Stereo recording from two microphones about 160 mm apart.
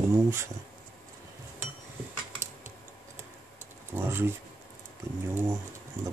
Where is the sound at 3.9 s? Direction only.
15° right (ahead or behind).